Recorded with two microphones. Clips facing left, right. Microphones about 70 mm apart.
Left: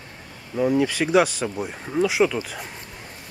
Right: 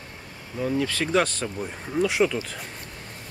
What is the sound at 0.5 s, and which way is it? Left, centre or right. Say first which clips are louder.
Speech: left 5 dB; centre.